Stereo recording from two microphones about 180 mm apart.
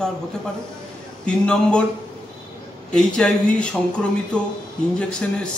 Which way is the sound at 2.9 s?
5° left (ahead or behind).